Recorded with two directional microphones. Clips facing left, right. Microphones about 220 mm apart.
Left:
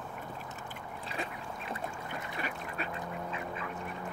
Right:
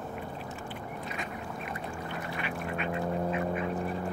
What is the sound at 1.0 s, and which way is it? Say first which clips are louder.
Duck: left 3 dB; 30° left (ahead or behind).